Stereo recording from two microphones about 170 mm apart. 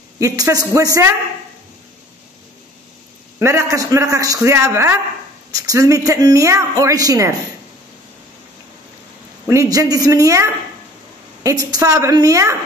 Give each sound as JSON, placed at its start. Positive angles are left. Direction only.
{"t": 0.2, "sound": "a man's voice", "side_deg": -20}
{"t": 3.3, "sound": "a man's voice", "side_deg": -15}
{"t": 9.5, "sound": "a man's voice", "side_deg": -20}